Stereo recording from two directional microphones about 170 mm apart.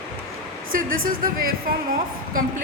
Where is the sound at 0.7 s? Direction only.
55° right (ahead or behind).